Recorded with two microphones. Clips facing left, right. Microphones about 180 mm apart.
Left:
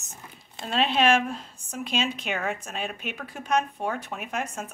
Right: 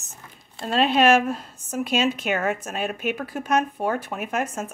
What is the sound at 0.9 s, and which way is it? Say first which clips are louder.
A woman's voice: right 4 dB; 45° right (ahead or behind).